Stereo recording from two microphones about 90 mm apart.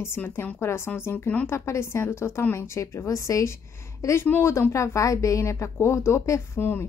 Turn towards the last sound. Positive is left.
turn(degrees=30)  # may be behind; listen again after turning